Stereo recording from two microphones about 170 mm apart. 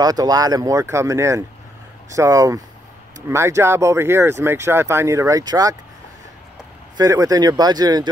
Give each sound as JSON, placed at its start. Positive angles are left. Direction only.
{"t": 0.0, "sound": "speech", "side_deg": -20}
{"t": 7.0, "sound": "speech", "side_deg": -20}